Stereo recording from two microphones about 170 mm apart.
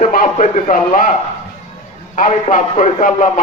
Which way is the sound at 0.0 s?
50° left (ahead or behind).